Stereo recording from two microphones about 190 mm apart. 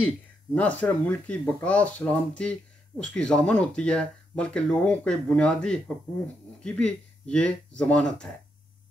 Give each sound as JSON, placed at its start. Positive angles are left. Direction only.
{"t": 0.6, "sound": "speech", "side_deg": 5}